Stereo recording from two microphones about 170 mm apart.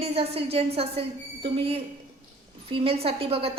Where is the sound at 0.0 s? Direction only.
35° right (ahead or behind).